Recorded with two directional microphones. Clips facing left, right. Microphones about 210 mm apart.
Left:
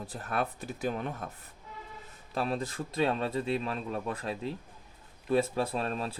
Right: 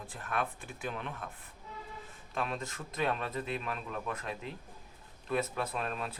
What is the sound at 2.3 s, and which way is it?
Speech, 35° left (ahead or behind).